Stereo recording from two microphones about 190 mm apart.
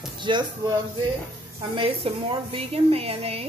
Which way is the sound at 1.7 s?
30° right (ahead or behind).